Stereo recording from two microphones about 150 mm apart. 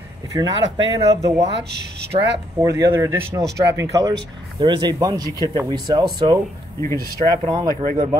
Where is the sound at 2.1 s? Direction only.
40° right (ahead or behind).